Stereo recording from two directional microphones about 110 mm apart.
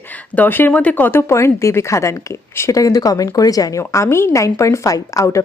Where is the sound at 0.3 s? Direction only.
20° left (ahead or behind).